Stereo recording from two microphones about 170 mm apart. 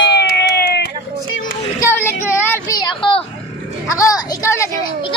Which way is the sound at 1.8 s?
15° left (ahead or behind).